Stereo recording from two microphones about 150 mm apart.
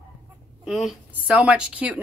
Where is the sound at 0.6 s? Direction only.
Centre (ahead or behind).